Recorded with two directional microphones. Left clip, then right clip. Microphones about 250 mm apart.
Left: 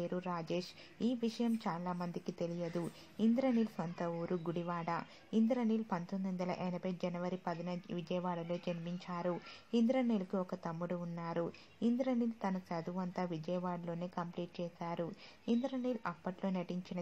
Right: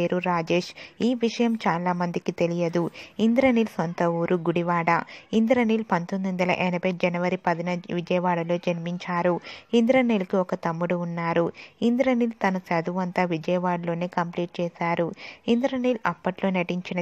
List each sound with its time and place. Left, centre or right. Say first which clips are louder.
0.0 s speech: right 16 dB; right